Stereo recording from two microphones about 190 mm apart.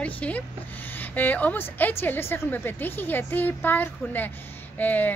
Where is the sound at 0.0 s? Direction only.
5° left (ahead or behind).